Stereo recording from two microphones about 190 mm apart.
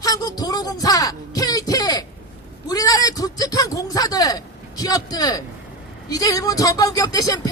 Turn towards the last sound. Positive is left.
turn(degrees=20)  # may be behind; listen again after turning